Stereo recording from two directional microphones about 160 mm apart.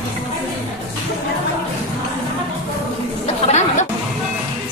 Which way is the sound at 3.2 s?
45° left (ahead or behind).